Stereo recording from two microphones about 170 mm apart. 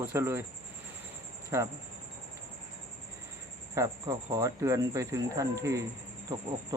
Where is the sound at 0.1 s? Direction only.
15° right (ahead or behind).